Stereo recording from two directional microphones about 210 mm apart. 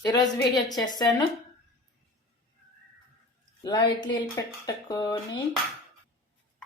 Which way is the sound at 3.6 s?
20° left (ahead or behind).